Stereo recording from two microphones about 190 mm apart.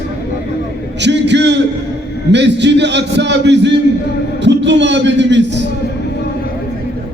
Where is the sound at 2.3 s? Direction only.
65° right (ahead or behind).